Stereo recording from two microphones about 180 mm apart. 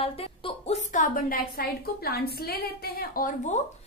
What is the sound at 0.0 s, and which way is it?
A woman's voice, 30° left (ahead or behind).